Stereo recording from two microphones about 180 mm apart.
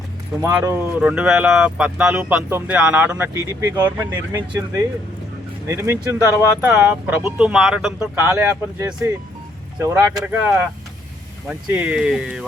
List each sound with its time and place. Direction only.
0.5 s speech: 10° right (ahead or behind)